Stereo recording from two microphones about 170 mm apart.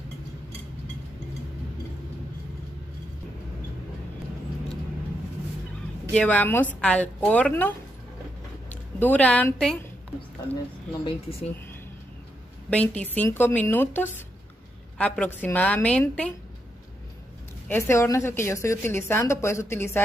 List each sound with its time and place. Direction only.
6.1 s a woman's voice: 10° left (ahead or behind)
11.1 s speech: 35° left (ahead or behind)
12.6 s a woman's voice: 10° left (ahead or behind)
17.6 s a woman's voice: 15° left (ahead or behind)